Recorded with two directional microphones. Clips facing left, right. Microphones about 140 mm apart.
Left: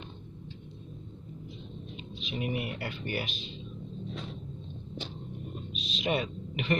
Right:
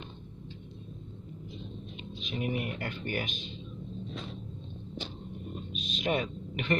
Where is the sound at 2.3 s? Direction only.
5° left (ahead or behind).